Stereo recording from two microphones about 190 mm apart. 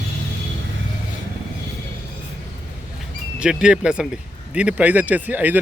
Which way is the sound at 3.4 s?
5° right (ahead or behind).